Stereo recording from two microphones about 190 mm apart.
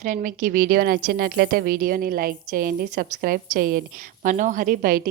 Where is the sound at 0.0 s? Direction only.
45° right (ahead or behind).